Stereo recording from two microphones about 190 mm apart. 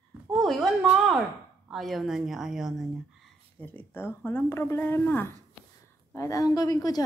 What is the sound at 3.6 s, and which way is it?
Speech, 10° left (ahead or behind).